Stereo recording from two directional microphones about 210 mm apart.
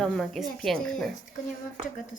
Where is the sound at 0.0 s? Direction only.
Centre (ahead or behind).